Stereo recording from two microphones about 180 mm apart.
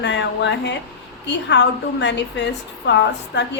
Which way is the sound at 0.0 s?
75° left (ahead or behind).